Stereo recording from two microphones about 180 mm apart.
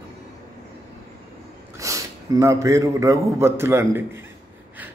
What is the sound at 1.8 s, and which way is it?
A man's voice, 15° right (ahead or behind).